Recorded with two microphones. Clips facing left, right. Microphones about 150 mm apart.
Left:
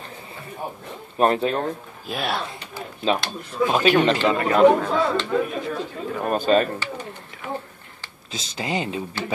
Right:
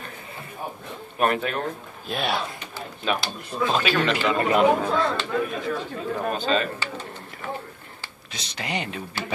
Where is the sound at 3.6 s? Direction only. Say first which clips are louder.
Left 5 dB; 15° left (ahead or behind).